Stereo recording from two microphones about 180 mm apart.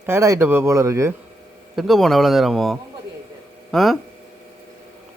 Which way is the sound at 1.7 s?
Centre (ahead or behind).